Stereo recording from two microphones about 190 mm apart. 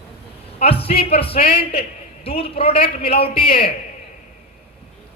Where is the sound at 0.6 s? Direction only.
30° left (ahead or behind).